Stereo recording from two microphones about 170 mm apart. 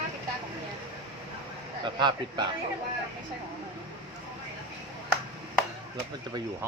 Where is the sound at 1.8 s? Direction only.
25° right (ahead or behind).